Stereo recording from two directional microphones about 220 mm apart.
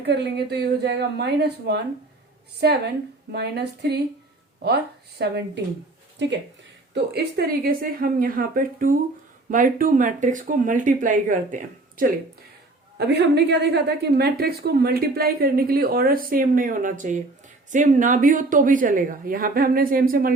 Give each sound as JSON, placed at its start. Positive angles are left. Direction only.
{"t": 0.0, "sound": "a woman's voice", "side_deg": -50}
{"t": 6.9, "sound": "speech", "side_deg": -45}
{"t": 13.0, "sound": "a woman's voice", "side_deg": -50}